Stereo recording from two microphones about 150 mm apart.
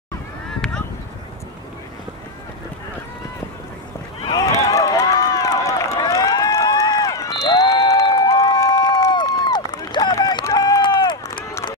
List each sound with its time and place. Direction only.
4.2 s run: 25° left (ahead or behind)